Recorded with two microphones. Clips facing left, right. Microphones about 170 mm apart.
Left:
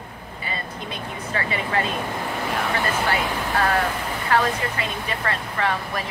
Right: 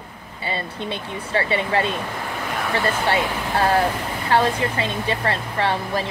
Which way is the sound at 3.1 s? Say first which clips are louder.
Right 2 dB; 30° right (ahead or behind).